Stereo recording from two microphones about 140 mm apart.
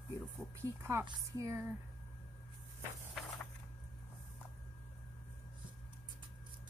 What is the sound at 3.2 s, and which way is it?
Vehicle, centre (ahead or behind).